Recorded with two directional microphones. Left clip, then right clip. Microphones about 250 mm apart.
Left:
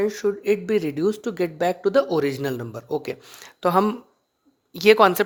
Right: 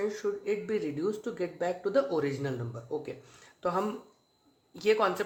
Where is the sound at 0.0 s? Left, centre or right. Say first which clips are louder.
Left 9 dB; left.